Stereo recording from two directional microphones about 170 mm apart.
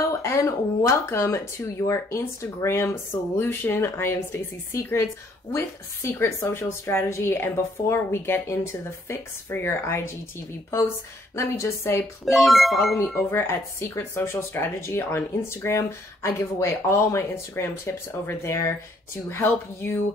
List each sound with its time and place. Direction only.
0.2 s speech: 15° left (ahead or behind)
6.0 s speech: 15° left (ahead or behind)
11.3 s speech: 15° left (ahead or behind)
12.3 s speech: centre (ahead or behind)
13.3 s speech: 15° left (ahead or behind)